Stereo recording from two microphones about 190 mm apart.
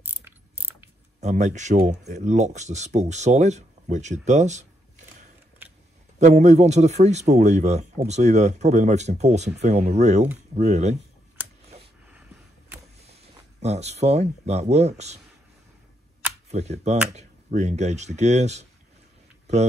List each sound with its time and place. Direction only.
0.0 s mechanisms: 10° right (ahead or behind)
1.2 s speech: 40° right (ahead or behind)
6.1 s speech: 40° right (ahead or behind)
13.0 s speech: 35° right (ahead or behind)
16.4 s speech: 35° right (ahead or behind)